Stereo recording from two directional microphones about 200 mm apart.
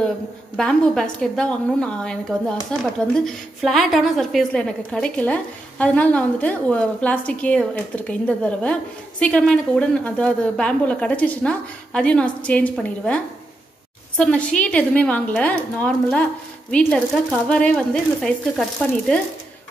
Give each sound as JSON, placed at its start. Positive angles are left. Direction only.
{"t": 0.6, "sound": "a woman's voice", "side_deg": 5}